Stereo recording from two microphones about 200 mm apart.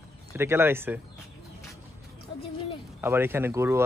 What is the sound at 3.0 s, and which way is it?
Speech, 10° right (ahead or behind).